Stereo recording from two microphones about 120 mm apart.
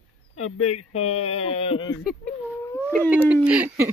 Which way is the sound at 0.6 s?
60° left (ahead or behind).